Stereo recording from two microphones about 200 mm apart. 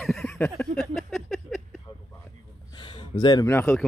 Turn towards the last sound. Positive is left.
turn(degrees=10)  # may be behind; listen again after turning